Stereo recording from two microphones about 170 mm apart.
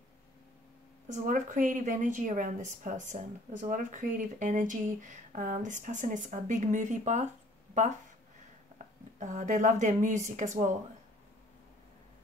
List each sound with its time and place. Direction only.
1.0 s a woman's voice: 45° right (ahead or behind)
8.7 s speech: 45° right (ahead or behind)